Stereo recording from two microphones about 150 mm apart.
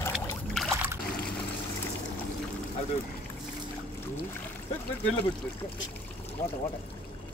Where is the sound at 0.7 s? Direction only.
15° right (ahead or behind).